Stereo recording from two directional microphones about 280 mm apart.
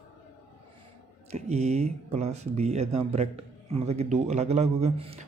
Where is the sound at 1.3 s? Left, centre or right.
Right.